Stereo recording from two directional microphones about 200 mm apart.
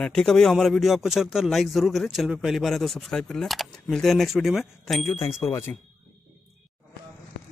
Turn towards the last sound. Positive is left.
turn(degrees=15)  # may be behind; listen again after turning